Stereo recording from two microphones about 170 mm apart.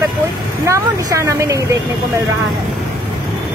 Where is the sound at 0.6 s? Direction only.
15° right (ahead or behind).